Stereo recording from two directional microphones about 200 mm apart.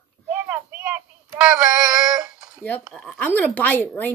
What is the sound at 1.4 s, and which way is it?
Female singing, 5° right (ahead or behind).